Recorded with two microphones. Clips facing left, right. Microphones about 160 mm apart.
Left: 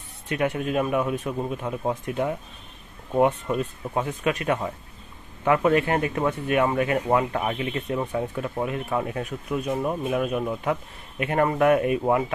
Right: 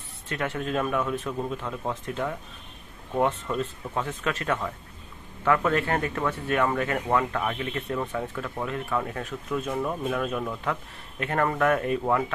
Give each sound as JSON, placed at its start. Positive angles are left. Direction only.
{"t": 0.3, "sound": "speech", "side_deg": 15}